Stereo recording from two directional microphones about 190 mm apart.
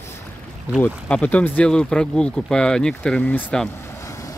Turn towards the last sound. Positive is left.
turn(degrees=5)  # may be behind; listen again after turning